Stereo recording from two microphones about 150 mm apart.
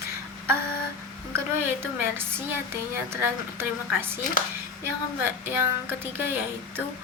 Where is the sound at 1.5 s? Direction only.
15° right (ahead or behind).